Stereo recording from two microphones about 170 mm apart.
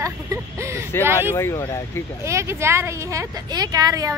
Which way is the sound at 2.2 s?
15° right (ahead or behind).